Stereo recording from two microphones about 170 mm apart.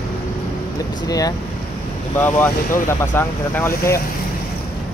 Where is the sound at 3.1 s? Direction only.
15° left (ahead or behind).